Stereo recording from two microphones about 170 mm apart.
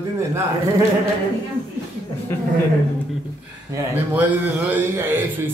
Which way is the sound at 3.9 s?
10° right (ahead or behind).